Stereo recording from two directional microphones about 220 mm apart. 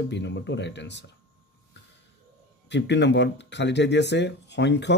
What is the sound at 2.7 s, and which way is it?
Speech, 50° left (ahead or behind).